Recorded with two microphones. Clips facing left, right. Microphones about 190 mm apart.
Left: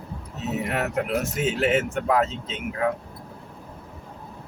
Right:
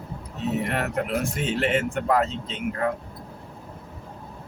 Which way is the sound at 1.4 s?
5° left (ahead or behind).